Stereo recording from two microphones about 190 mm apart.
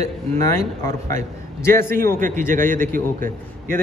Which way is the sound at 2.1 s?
40° right (ahead or behind).